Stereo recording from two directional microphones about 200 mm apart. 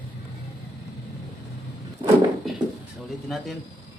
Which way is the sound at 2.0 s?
25° right (ahead or behind).